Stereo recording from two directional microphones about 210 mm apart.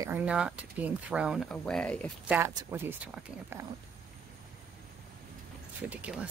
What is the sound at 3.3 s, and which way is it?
Speech, 15° left (ahead or behind).